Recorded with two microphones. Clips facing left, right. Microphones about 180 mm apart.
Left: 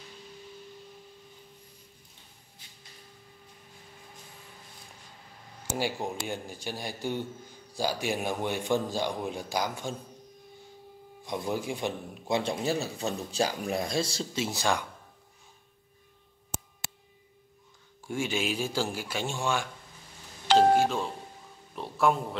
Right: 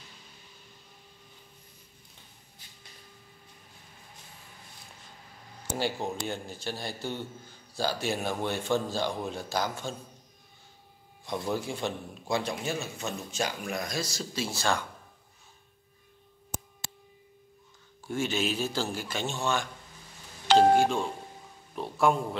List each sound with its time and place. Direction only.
5.8 s a man's voice: 10° left (ahead or behind)
11.2 s a man's voice: 15° left (ahead or behind)
12.6 s speech: 35° left (ahead or behind); by 14.9 s 15° left (ahead or behind)
18.0 s a man's voice: 10° left (ahead or behind)